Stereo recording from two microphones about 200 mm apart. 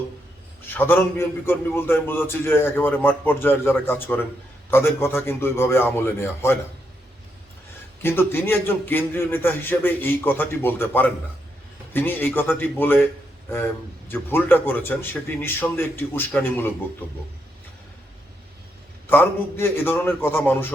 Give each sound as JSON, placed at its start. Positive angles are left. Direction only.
{"t": 0.7, "sound": "a man's voice", "side_deg": 10}
{"t": 8.0, "sound": "a man's voice", "side_deg": 10}
{"t": 14.1, "sound": "a man's voice", "side_deg": 10}
{"t": 19.0, "sound": "a man's voice", "side_deg": 10}